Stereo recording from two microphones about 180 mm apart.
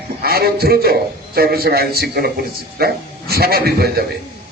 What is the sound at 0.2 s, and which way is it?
A man's voice, 60° right (ahead or behind).